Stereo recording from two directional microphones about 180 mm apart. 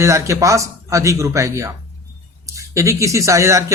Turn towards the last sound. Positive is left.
turn(degrees=-15)  # may be behind; listen again after turning